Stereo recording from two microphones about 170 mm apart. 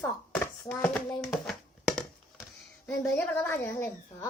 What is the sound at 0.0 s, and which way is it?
Chopping, 10° left (ahead or behind).